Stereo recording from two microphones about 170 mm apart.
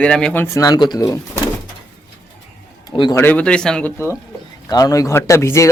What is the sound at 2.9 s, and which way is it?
Speech, 25° left (ahead or behind).